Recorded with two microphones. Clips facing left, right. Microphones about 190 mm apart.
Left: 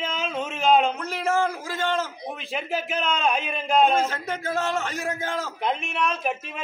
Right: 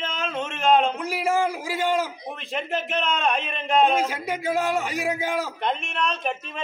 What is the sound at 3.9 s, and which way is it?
A man's voice, 10° right (ahead or behind).